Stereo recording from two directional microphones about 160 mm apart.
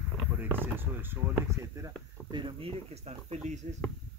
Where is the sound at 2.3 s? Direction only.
35° right (ahead or behind).